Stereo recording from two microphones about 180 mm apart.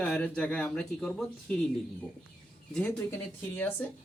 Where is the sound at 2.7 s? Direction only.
10° left (ahead or behind).